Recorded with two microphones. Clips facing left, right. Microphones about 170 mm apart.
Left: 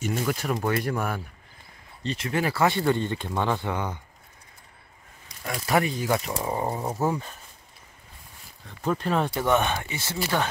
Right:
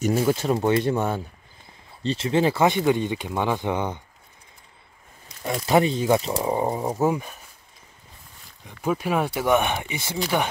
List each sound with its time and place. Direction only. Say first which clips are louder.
0.0 s speech: right 6 dB; 30° right (ahead or behind)
5.4 s speech: right 5 dB; 25° right (ahead or behind)
8.6 s speech: right 2 dB; 10° right (ahead or behind)